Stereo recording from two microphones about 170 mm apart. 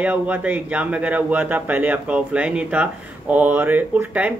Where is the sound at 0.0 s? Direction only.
10° right (ahead or behind).